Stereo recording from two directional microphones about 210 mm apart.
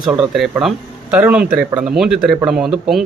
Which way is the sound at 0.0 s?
5° right (ahead or behind).